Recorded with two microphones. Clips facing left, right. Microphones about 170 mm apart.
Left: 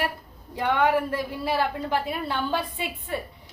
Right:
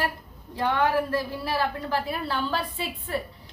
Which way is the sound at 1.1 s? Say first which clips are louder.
Even; 20° left (ahead or behind).